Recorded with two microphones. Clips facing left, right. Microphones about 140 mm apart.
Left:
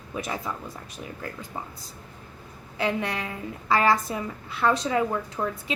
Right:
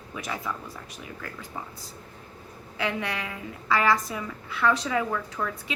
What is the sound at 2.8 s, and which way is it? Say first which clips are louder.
A woman's voice: left 3 dB; 35° left (ahead or behind).